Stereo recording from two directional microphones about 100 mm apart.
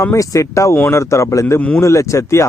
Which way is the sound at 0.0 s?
30° left (ahead or behind).